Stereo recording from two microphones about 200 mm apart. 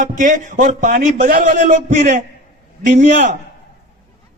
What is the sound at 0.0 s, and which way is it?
A man's voice, 40° right (ahead or behind).